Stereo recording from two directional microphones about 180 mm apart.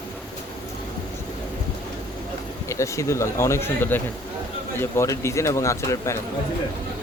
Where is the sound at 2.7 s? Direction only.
15° left (ahead or behind).